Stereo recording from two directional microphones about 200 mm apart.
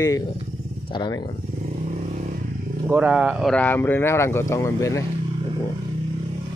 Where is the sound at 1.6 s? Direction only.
35° right (ahead or behind).